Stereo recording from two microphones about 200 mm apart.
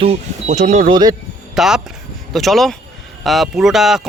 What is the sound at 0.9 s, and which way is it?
Speech, 20° right (ahead or behind).